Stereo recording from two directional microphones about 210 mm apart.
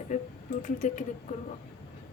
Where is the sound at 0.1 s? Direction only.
40° left (ahead or behind).